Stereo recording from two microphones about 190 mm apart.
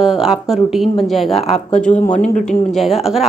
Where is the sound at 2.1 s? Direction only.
40° left (ahead or behind).